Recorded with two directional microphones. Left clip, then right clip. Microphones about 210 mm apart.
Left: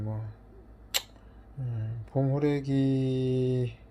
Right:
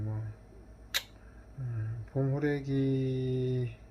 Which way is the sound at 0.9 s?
25° left (ahead or behind).